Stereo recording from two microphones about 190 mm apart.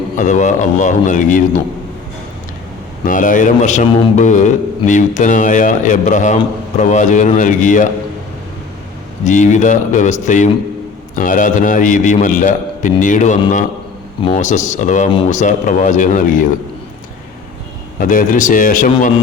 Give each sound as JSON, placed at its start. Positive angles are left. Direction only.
{"t": 0.2, "sound": "a man's voice", "side_deg": 40}
{"t": 3.1, "sound": "a man's voice", "side_deg": 45}
{"t": 9.2, "sound": "a man's voice", "side_deg": 40}
{"t": 14.3, "sound": "a man's voice", "side_deg": 40}
{"t": 18.0, "sound": "a man's voice", "side_deg": 45}